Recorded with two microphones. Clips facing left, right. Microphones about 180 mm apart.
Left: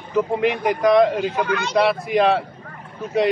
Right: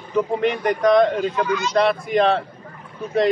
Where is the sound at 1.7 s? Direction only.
5° left (ahead or behind).